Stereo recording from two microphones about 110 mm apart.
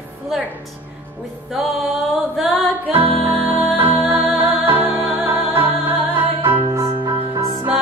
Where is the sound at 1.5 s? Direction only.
Centre (ahead or behind).